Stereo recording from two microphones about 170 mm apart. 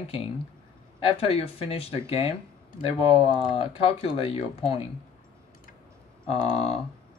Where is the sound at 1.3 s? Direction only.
35° left (ahead or behind).